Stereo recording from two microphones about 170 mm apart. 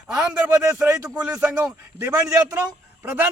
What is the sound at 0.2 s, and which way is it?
A man's voice, 10° right (ahead or behind).